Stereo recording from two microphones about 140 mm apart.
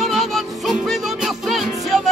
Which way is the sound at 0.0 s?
Centre (ahead or behind).